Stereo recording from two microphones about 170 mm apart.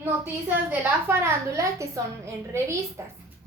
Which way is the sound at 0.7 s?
15° right (ahead or behind).